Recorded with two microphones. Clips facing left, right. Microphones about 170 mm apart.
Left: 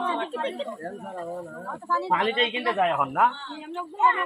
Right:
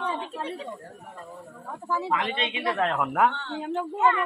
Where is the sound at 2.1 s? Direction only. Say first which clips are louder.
Left 6 dB; 35° left (ahead or behind).